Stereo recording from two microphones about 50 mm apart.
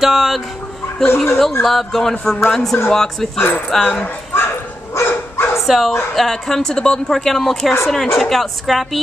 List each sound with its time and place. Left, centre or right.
0.0 s dog: centre
1.0 s speech: left
1.6 s a woman's voice: centre
3.3 s speech: left
4.9 s dog: left
5.7 s speech: centre
6.1 s a woman's voice: centre